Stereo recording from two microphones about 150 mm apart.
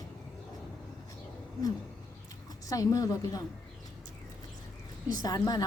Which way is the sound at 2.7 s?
20° left (ahead or behind).